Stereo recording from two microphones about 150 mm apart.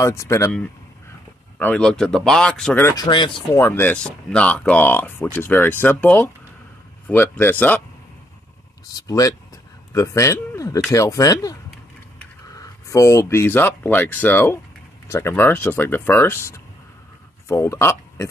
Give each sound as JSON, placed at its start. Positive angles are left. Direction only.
{"t": 0.0, "sound": "speech", "side_deg": 20}
{"t": 1.6, "sound": "speech", "side_deg": 10}
{"t": 2.8, "sound": "speech", "side_deg": 20}
{"t": 3.1, "sound": "speech", "side_deg": 35}
{"t": 3.5, "sound": "speech", "side_deg": 15}
{"t": 8.9, "sound": "speech", "side_deg": 25}
{"t": 12.5, "sound": "speech", "side_deg": 20}